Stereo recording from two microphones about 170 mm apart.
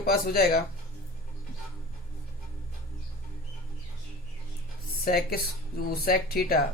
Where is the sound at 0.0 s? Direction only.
60° left (ahead or behind).